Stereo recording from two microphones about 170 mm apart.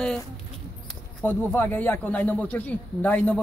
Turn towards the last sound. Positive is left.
turn(degrees=10)  # may be behind; listen again after turning